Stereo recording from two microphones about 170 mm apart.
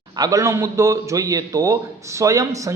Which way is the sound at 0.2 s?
20° right (ahead or behind).